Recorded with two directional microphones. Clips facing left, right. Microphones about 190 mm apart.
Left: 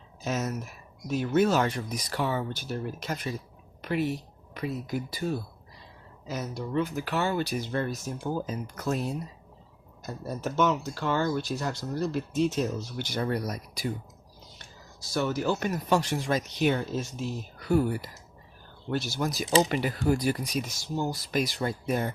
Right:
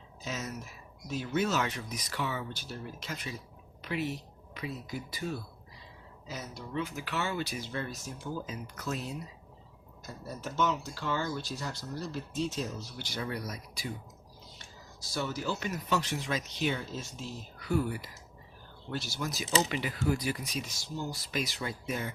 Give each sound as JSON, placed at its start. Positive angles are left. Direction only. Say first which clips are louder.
{"t": 0.3, "sound": "speech", "louder": "left 8 dB", "side_deg": 50}
{"t": 2.0, "sound": "speech", "louder": "left 6 dB", "side_deg": 40}
{"t": 5.1, "sound": "speech", "louder": "left 5 dB", "side_deg": 35}
{"t": 6.2, "sound": "speech", "louder": "left 8 dB", "side_deg": 55}
{"t": 8.6, "sound": "speech", "louder": "left 7 dB", "side_deg": 40}
{"t": 10.2, "sound": "speech", "louder": "left 5 dB", "side_deg": 60}
{"t": 13.1, "sound": "speech", "louder": "left 7 dB", "side_deg": 45}
{"t": 15.1, "sound": "speech", "louder": "left 7 dB", "side_deg": 55}
{"t": 21.1, "sound": "speech", "louder": "left 6 dB", "side_deg": 50}